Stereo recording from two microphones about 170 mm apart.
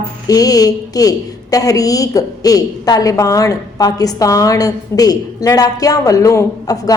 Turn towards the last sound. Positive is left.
turn(degrees=20)  # may be behind; listen again after turning